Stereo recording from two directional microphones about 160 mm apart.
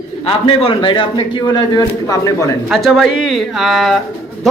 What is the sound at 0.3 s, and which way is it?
A man's voice, 35° left (ahead or behind).